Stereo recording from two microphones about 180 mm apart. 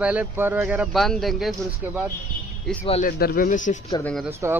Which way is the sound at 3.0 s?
55° left (ahead or behind).